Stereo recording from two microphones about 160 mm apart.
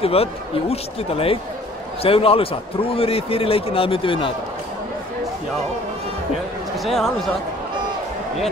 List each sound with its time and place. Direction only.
0.0 s a man's voice: 40° left (ahead or behind)
6.8 s speech: centre (ahead or behind)